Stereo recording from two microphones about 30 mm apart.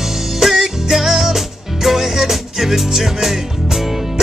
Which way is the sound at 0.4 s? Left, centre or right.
Centre.